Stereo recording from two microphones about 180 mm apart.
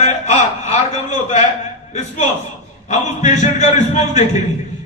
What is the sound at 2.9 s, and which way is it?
A man's voice, 40° left (ahead or behind).